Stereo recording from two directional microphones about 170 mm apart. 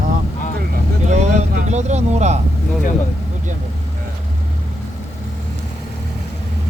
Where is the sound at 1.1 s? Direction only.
40° right (ahead or behind).